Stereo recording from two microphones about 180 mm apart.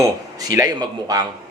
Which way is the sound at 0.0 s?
20° right (ahead or behind).